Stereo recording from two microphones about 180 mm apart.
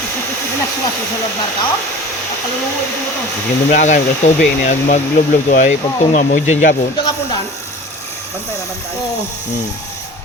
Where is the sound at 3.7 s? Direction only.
45° left (ahead or behind).